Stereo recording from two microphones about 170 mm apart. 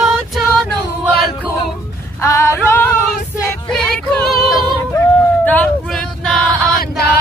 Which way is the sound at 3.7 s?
5° left (ahead or behind).